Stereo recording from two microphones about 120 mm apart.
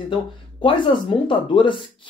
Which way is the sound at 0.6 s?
45° left (ahead or behind).